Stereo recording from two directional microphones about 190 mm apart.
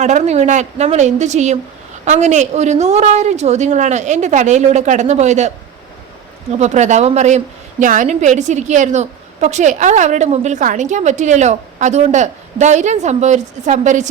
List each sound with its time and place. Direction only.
0.0 s a woman's voice: 40° right (ahead or behind)
6.6 s a woman's voice: 40° right (ahead or behind)